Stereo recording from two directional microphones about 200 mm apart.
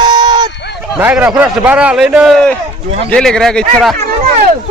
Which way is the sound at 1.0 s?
5° right (ahead or behind).